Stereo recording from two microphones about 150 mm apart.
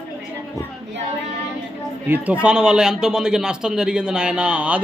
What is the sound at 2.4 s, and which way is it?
A man's voice, 5° right (ahead or behind).